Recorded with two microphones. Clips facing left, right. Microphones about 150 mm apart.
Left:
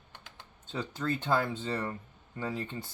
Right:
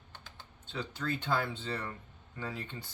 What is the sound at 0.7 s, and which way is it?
Speech, 45° left (ahead or behind).